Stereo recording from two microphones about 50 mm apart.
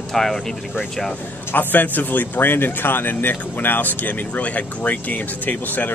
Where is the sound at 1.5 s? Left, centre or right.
Left.